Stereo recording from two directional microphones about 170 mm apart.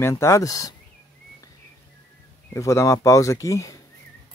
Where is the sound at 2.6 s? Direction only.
20° left (ahead or behind).